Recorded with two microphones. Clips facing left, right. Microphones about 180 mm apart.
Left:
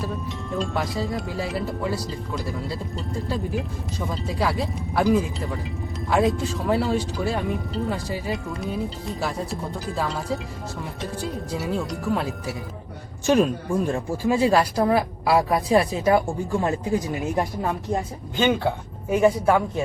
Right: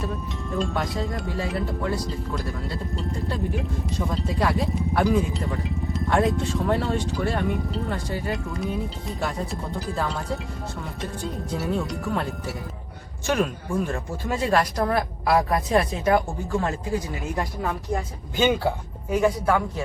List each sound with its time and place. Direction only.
0.0 s speech: centre (ahead or behind)
13.3 s speech: 30° left (ahead or behind)
13.9 s speech: 10° left (ahead or behind)
18.3 s speech: 5° right (ahead or behind)
19.2 s speech: 20° left (ahead or behind)